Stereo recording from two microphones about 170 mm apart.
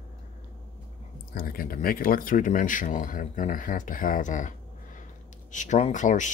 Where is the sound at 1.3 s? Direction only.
60° left (ahead or behind).